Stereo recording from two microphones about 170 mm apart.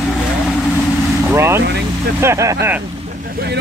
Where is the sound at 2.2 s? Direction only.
15° right (ahead or behind).